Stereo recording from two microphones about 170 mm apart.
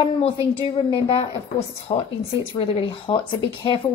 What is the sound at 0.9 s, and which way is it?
Speech, 30° left (ahead or behind).